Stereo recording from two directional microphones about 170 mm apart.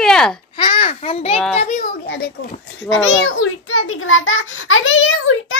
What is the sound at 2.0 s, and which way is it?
Speech, 80° left.